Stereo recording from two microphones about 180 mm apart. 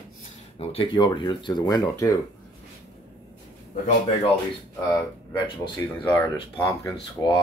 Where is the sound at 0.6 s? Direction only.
30° left (ahead or behind).